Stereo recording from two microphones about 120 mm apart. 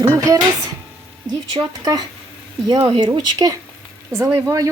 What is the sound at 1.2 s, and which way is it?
Speech, 30° right (ahead or behind).